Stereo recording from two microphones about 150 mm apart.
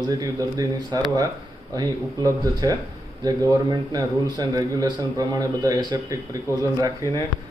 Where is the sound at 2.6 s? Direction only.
25° right (ahead or behind).